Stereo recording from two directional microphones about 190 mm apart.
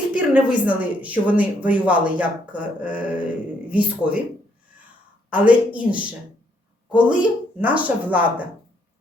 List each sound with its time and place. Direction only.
0.1 s a woman's voice: 5° right (ahead or behind)
5.3 s a woman's voice: 5° right (ahead or behind)